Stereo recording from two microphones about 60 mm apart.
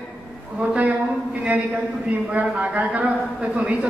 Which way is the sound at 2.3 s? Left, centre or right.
Right.